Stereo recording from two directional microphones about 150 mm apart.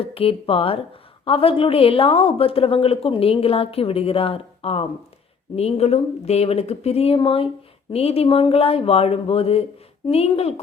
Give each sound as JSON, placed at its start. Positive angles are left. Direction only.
{"t": 0.0, "sound": "a woman's voice", "side_deg": 40}